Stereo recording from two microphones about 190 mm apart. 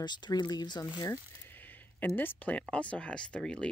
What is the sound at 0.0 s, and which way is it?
Speech, 25° left (ahead or behind).